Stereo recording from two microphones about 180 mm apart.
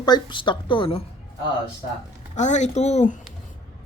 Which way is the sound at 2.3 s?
40° left (ahead or behind).